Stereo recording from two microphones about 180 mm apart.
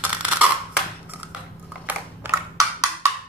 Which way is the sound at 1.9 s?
15° right (ahead or behind).